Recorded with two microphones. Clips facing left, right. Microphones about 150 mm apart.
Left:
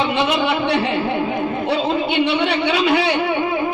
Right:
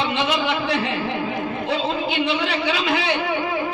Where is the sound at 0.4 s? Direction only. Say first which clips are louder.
Left 4 dB; 35° left (ahead or behind).